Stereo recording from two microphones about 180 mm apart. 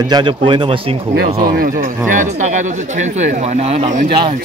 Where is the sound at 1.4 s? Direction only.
55° right (ahead or behind); by 4.0 s 35° right (ahead or behind).